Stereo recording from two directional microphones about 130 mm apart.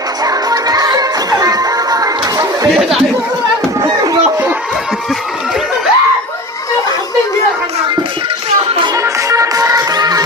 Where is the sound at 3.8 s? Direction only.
30° right (ahead or behind).